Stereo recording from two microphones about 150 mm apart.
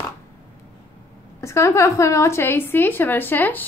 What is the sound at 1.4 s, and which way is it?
A woman's voice, 20° left (ahead or behind).